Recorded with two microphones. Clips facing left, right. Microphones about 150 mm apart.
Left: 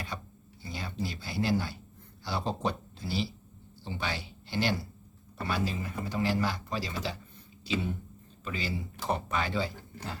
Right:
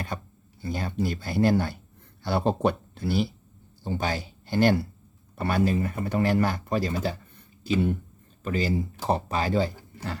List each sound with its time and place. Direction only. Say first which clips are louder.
0.1 s a sound: right 5 dB; 50° right (ahead or behind)
0.6 s speech: right 8 dB; 50° right (ahead or behind)
3.8 s speech: right 7 dB; 45° right (ahead or behind)
8.4 s speech: right 9 dB; 45° right (ahead or behind)
9.0 s speech: right 5 dB; 35° right (ahead or behind)